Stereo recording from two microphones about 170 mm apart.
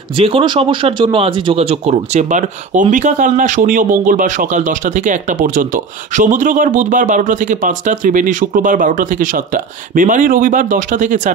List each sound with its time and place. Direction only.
0.2 s speech: 30° right (ahead or behind); by 11.3 s 50° right (ahead or behind)